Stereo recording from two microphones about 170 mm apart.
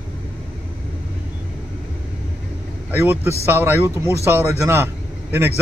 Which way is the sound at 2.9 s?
15° right (ahead or behind).